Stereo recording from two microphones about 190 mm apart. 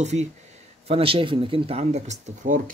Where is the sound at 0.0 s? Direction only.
35° right (ahead or behind).